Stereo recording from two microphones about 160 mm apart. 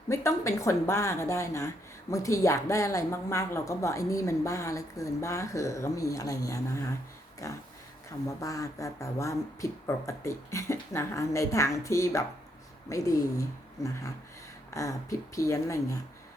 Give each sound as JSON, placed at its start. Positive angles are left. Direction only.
{"t": 0.1, "sound": "speech", "side_deg": 15}